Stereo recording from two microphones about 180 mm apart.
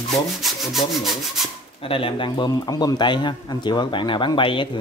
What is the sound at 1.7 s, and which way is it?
Speech, 30° left (ahead or behind).